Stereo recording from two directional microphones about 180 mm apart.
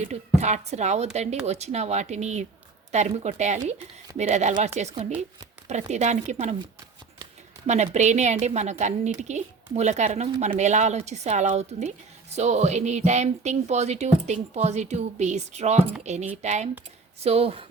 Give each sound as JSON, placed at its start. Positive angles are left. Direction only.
{"t": 0.0, "sound": "a woman's voice", "side_deg": -40}
{"t": 7.7, "sound": "a woman's voice", "side_deg": -40}